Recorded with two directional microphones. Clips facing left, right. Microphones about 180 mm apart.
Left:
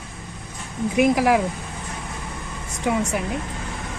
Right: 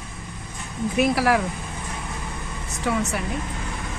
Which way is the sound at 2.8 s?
15° left (ahead or behind).